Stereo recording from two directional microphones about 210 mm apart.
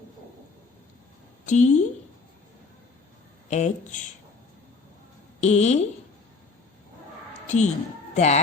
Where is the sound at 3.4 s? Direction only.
35° left (ahead or behind).